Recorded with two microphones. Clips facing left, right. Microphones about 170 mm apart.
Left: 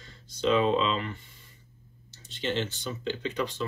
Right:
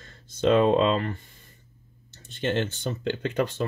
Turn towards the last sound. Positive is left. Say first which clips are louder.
# right 4 dB
turn(degrees=-55)  # may be behind; listen again after turning